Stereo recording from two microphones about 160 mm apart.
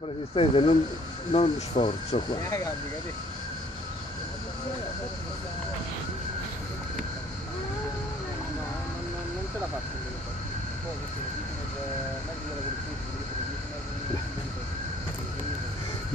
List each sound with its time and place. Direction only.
0.4 s speech: 35° left (ahead or behind)